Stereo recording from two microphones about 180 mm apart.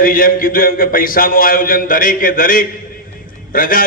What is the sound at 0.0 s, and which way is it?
A man's voice, 50° left (ahead or behind).